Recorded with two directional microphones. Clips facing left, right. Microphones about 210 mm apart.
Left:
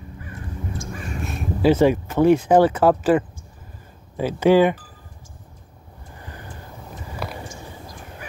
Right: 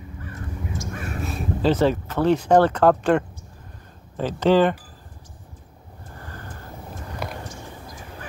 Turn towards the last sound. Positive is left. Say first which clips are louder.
# even
turn(degrees=0)  # may be behind; listen again after turning